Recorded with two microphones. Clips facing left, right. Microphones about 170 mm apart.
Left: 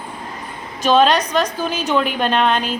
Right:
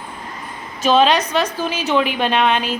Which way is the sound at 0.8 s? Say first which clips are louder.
Even; 5° right (ahead or behind).